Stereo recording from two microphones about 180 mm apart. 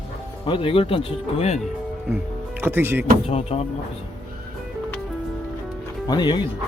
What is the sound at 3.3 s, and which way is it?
Speech, 35° left (ahead or behind).